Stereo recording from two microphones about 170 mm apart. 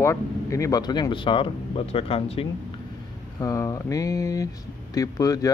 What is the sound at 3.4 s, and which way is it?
Speech, 20° left (ahead or behind).